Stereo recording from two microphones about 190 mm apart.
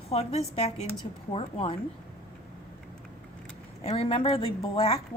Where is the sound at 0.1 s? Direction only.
35° left (ahead or behind).